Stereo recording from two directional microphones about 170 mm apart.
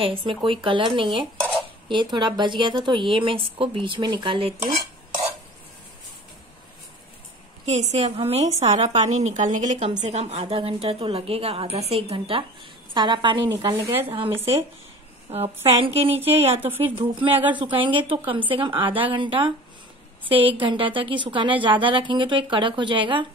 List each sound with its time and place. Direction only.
0.0 s a woman's voice: 30° right (ahead or behind)
7.6 s a woman's voice: 40° right (ahead or behind); by 14.6 s 15° right (ahead or behind)
15.6 s a woman's voice: 35° right (ahead or behind)
17.3 s speech: 10° right (ahead or behind)
17.6 s a woman's voice: 30° right (ahead or behind)